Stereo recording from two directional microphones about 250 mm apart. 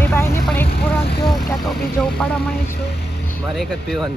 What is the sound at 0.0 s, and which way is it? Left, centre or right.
Vehicle, centre.